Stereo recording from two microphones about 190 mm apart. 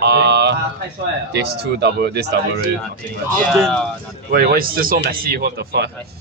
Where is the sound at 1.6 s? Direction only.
60° right (ahead or behind).